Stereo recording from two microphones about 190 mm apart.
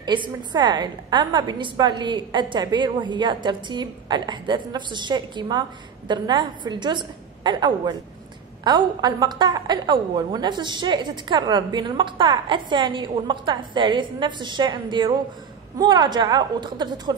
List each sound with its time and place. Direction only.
0.0 s a woman's voice: 25° right (ahead or behind)